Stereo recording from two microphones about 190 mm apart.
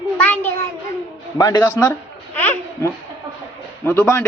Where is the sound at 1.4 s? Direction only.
20° left (ahead or behind).